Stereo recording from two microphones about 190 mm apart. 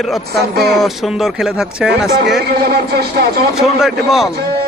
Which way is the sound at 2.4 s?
55° right (ahead or behind).